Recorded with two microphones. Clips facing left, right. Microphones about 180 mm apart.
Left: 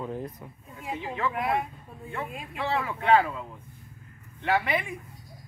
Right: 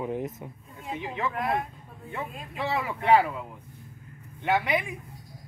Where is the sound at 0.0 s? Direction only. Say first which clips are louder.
Right 3 dB; 20° right (ahead or behind).